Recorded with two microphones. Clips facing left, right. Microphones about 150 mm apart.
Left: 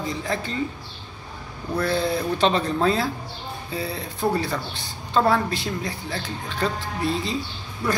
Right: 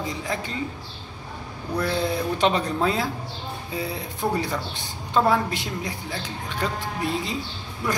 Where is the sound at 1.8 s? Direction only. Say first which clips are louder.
Left 2 dB; 15° right (ahead or behind).